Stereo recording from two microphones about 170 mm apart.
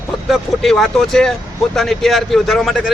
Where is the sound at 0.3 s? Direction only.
Centre (ahead or behind).